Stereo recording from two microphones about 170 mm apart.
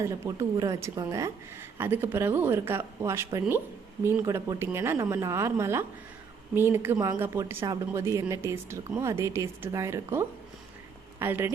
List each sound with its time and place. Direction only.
0.0 s a woman's voice: 20° right (ahead or behind)